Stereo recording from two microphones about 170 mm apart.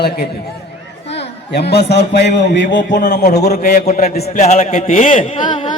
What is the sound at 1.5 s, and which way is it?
A man's voice, 75° left (ahead or behind).